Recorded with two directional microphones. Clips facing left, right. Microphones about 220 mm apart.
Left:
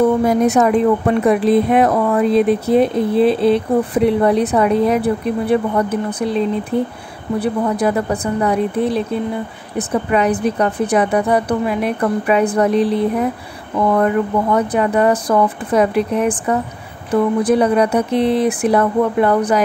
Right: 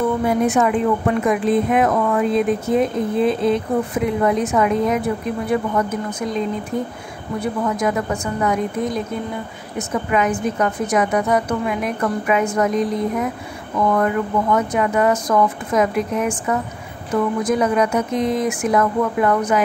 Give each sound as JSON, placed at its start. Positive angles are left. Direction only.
{"t": 0.2, "sound": "a woman's voice", "side_deg": 40}
{"t": 6.7, "sound": "speech", "side_deg": 70}
{"t": 7.3, "sound": "a woman's voice", "side_deg": 35}
{"t": 13.9, "sound": "a woman's voice", "side_deg": 35}